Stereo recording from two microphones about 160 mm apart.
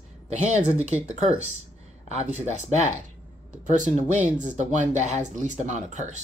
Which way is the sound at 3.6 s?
50° right (ahead or behind).